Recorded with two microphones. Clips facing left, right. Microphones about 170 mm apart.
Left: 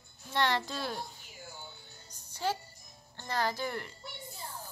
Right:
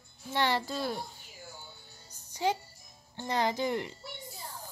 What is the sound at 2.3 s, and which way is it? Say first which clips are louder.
Music: right 3 dB; 15° right (ahead or behind).